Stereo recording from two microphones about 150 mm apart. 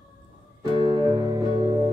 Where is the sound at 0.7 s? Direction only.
30° right (ahead or behind).